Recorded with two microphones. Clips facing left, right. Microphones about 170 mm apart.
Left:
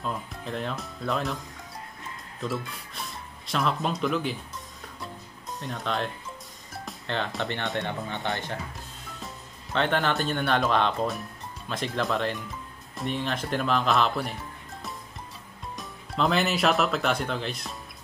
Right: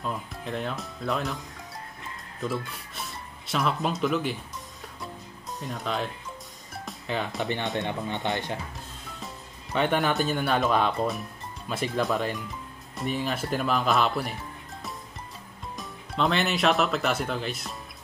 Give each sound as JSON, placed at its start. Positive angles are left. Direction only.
{"t": 0.0, "sound": "speech", "side_deg": 0}
{"t": 2.4, "sound": "speech", "side_deg": 0}
{"t": 5.0, "sound": "music", "side_deg": 0}
{"t": 7.8, "sound": "speech", "side_deg": -20}
{"t": 9.8, "sound": "speech", "side_deg": -10}